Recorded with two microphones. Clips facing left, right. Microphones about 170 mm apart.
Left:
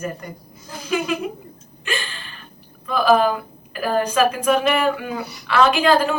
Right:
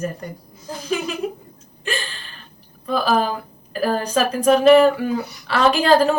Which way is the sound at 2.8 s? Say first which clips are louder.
Left 3 dB; 35° right (ahead or behind).